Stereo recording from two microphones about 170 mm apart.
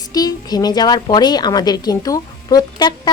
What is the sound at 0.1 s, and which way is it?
A woman's voice, 25° left (ahead or behind).